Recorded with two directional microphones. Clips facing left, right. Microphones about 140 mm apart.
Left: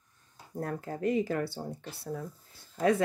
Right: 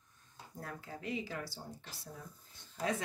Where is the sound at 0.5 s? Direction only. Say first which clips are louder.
Left 11 dB; 45° left (ahead or behind).